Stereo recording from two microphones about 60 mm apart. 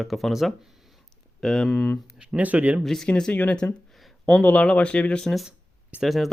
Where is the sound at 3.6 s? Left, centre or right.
Left.